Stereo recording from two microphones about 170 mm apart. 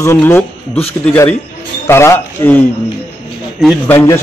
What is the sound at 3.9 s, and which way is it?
Speech, 10° left (ahead or behind).